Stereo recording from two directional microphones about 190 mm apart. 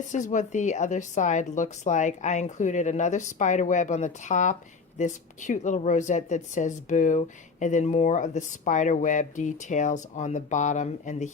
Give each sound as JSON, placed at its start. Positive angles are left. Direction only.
{"t": 0.1, "sound": "speech", "side_deg": 40}